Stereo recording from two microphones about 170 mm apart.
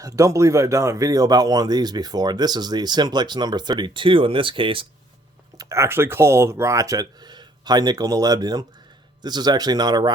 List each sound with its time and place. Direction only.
0.0 s speech: 20° right (ahead or behind)
5.5 s speech: 20° right (ahead or behind)